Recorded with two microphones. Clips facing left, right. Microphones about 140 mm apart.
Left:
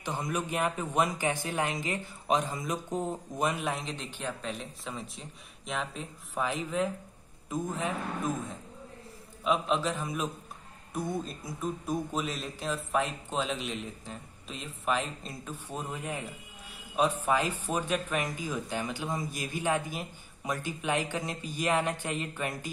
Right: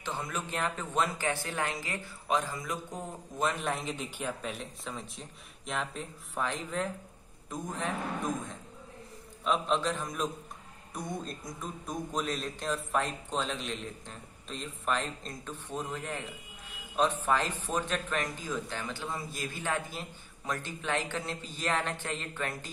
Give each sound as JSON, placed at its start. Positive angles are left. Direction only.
{"t": 0.0, "sound": "speech", "side_deg": 15}
{"t": 3.6, "sound": "speech", "side_deg": 0}